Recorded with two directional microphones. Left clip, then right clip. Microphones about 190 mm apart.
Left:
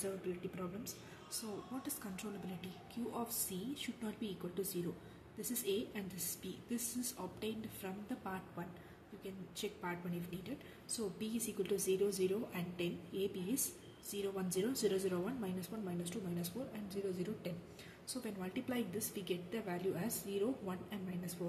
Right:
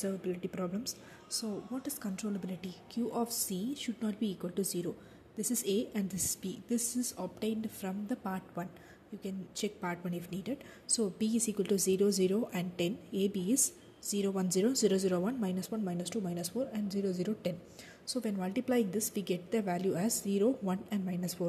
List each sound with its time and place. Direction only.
0.0 s speech: 35° right (ahead or behind)